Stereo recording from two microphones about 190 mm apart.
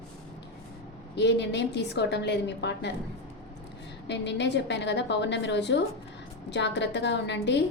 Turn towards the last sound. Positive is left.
turn(degrees=65)  # may be behind; listen again after turning